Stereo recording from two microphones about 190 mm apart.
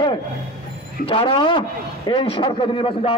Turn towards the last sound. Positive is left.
turn(degrees=25)  # may be behind; listen again after turning